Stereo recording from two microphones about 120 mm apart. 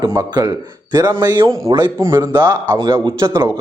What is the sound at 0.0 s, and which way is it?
Speech, 30° right (ahead or behind).